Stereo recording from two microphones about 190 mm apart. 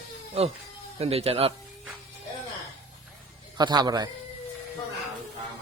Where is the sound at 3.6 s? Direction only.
20° right (ahead or behind).